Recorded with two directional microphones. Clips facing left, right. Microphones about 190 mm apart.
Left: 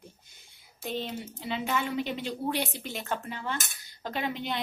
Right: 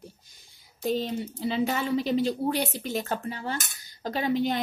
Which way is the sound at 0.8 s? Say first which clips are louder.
Right 7 dB; 40° right (ahead or behind).